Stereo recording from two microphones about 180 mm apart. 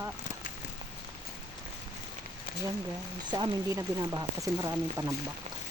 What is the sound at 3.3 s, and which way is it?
Speech, 25° right (ahead or behind).